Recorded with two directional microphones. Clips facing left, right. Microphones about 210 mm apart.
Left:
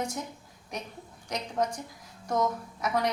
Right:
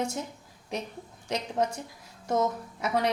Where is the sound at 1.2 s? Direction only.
25° right (ahead or behind).